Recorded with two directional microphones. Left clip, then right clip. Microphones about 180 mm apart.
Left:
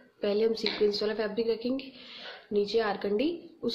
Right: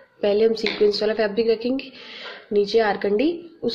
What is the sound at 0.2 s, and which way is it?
Speech, 10° right (ahead or behind).